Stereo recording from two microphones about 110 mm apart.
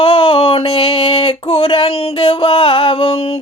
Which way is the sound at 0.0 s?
55° left (ahead or behind).